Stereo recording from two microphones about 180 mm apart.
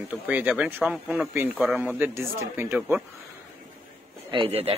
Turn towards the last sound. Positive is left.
turn(degrees=-30)  # may be behind; listen again after turning